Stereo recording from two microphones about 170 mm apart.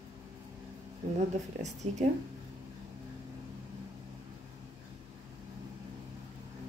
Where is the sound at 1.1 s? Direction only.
40° right (ahead or behind).